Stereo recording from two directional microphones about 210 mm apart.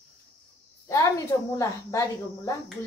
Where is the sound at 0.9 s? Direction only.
15° left (ahead or behind).